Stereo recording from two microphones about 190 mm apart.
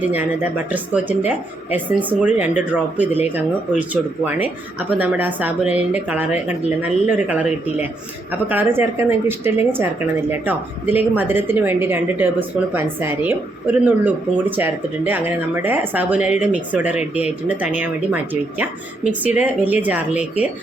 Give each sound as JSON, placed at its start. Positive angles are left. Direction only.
{"t": 0.0, "sound": "a woman's voice", "side_deg": -10}
{"t": 17.0, "sound": "speech", "side_deg": 35}
{"t": 17.6, "sound": "a woman's voice", "side_deg": -10}